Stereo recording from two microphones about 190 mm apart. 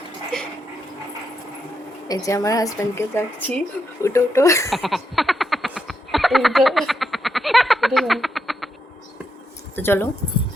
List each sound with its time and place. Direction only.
2.0 s speech: 15° left (ahead or behind)
4.7 s frog: centre (ahead or behind)
9.7 s speech: 10° left (ahead or behind)